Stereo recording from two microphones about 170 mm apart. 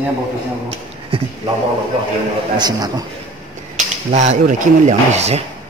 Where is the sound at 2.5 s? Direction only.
25° right (ahead or behind).